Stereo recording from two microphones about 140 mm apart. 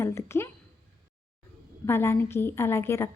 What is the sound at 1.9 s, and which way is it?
Speech, 15° left (ahead or behind).